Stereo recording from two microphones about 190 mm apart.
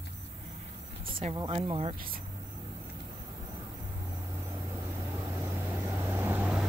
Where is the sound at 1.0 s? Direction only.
50° right (ahead or behind).